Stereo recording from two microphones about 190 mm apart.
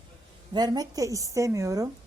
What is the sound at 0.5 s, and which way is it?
Speech, 20° right (ahead or behind).